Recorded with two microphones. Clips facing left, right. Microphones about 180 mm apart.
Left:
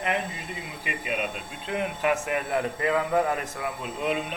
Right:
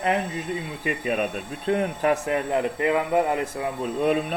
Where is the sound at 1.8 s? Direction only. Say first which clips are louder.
Left 1 dB; 35° right (ahead or behind).